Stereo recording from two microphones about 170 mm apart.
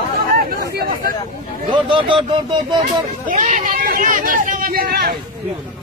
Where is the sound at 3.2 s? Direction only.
45° right (ahead or behind); by 5.2 s 65° right (ahead or behind).